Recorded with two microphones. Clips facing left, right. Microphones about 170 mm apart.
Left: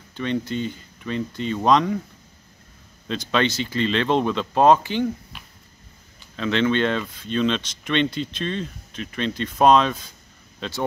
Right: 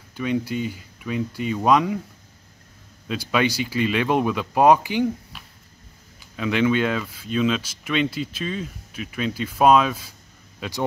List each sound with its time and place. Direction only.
0.1 s speech: 10° right (ahead or behind)
3.1 s speech: 10° right (ahead or behind)
6.3 s a man's voice: 10° right (ahead or behind)